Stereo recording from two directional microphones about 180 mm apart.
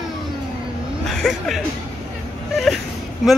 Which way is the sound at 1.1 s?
Centre (ahead or behind).